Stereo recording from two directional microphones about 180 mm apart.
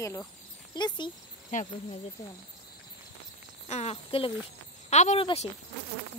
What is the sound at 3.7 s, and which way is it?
Speech, 35° left (ahead or behind).